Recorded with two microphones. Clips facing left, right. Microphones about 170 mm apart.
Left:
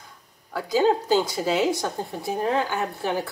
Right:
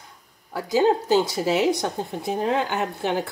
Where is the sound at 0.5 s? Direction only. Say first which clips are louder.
Right 1 dB; 20° right (ahead or behind).